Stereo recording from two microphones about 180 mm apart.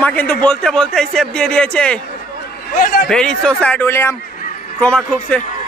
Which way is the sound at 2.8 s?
55° left (ahead or behind).